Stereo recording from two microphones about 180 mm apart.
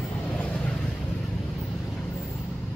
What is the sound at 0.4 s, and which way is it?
Vehicle, 5° left (ahead or behind).